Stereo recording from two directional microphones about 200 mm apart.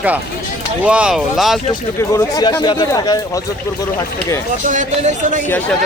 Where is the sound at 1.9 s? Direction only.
15° left (ahead or behind).